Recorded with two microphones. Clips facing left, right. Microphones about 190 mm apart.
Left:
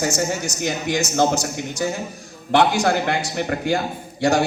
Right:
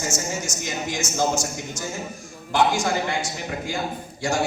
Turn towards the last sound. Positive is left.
turn(degrees=65)  # may be behind; listen again after turning